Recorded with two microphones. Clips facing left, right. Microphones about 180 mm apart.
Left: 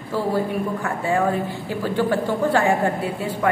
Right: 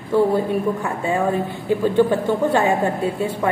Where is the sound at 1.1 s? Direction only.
20° right (ahead or behind).